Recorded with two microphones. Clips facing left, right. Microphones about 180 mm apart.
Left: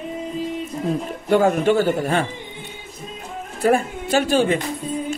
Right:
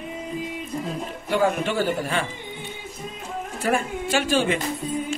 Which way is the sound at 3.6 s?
35° left (ahead or behind).